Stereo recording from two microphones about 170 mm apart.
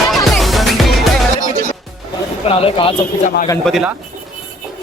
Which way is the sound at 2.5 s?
35° left (ahead or behind).